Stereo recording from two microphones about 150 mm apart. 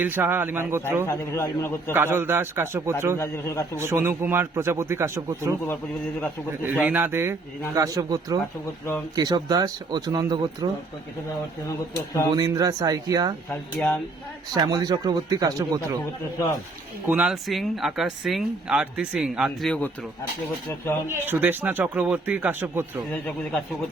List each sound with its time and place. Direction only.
0.0 s speech: 15° right (ahead or behind)
1.0 s a man's voice: 15° left (ahead or behind)
1.9 s speech: 15° right (ahead or behind)
3.2 s a man's voice: 15° left (ahead or behind)
3.8 s speech: 15° right (ahead or behind)
5.6 s a man's voice: 15° left (ahead or behind)
6.7 s speech: 10° right (ahead or behind); by 10.7 s 25° right (ahead or behind)
12.3 s speech: 25° right (ahead or behind)
13.8 s speech: 5° left (ahead or behind)
14.5 s speech: 25° right (ahead or behind)
17.1 s speech: 5° right (ahead or behind)
21.1 s speech: 15° right (ahead or behind)
23.2 s a man's voice: 5° left (ahead or behind)